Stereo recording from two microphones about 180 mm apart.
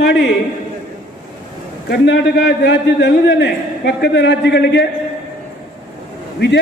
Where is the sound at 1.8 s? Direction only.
70° left (ahead or behind).